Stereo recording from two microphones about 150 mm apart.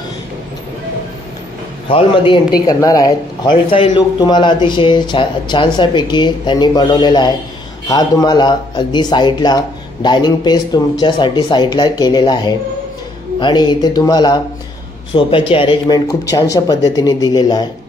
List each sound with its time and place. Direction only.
1.9 s a man's voice: 35° left (ahead or behind)
16.1 s speech: 20° left (ahead or behind)